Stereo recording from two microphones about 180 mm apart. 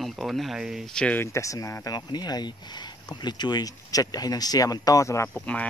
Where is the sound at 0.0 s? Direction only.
Centre (ahead or behind).